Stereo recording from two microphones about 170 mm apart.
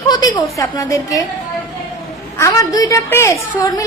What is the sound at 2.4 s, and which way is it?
A woman's voice, 20° left (ahead or behind).